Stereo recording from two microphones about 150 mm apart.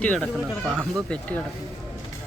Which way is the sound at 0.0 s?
10° left (ahead or behind).